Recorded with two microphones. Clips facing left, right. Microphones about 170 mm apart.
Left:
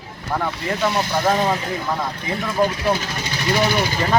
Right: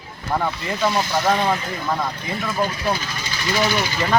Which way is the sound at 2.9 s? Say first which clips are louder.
Left 3 dB; 65° left (ahead or behind).